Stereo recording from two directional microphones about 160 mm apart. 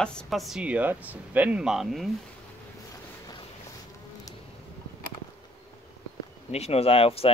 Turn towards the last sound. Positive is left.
turn(degrees=35)  # may be behind; listen again after turning